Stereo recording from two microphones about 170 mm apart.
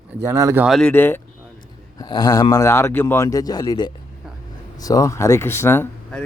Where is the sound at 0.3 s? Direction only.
15° right (ahead or behind).